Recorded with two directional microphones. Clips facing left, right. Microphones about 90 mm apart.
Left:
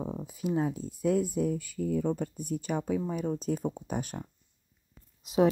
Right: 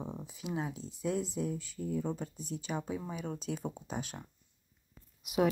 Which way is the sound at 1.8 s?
75° left (ahead or behind).